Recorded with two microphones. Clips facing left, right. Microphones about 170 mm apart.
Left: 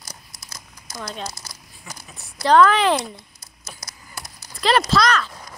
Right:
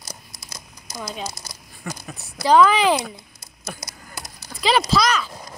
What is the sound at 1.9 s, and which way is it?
Speech, 60° right (ahead or behind).